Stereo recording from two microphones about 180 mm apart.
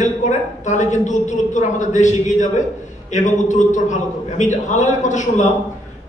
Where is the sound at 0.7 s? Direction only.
40° left (ahead or behind).